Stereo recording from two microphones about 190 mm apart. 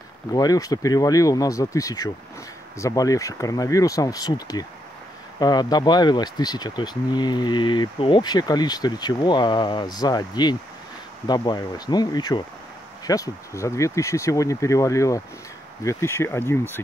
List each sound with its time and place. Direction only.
0.3 s speech: 20° left (ahead or behind)